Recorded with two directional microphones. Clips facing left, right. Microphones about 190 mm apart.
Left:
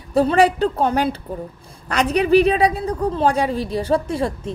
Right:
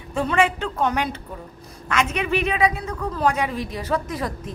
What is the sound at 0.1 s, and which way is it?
A woman's voice, 35° left (ahead or behind).